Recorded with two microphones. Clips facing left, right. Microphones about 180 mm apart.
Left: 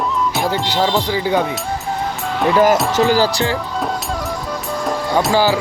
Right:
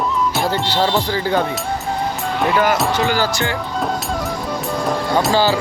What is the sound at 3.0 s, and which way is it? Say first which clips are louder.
Speech: left 4 dB; 35° left (ahead or behind).